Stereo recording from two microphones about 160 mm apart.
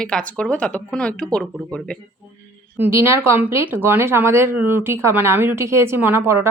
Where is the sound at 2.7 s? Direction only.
15° right (ahead or behind).